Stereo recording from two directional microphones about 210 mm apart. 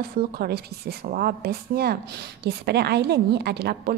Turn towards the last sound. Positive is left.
turn(degrees=-50)  # may be behind; listen again after turning